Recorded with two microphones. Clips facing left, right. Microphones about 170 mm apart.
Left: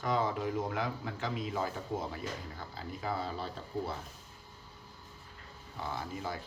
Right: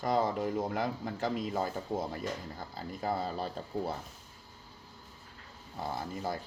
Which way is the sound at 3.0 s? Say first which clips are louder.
Right 3 dB; 45° right (ahead or behind).